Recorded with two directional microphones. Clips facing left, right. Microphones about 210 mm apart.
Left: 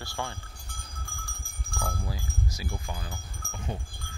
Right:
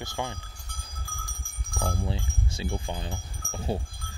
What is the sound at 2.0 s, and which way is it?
Livestock, 25° right (ahead or behind).